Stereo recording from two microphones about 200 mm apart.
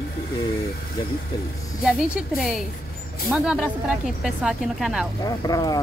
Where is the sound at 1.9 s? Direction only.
Centre (ahead or behind).